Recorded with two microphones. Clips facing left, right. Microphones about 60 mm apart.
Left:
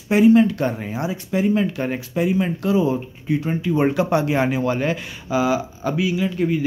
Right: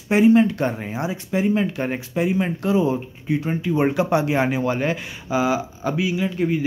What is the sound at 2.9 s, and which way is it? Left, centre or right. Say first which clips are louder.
Speech: left 1 dB; centre.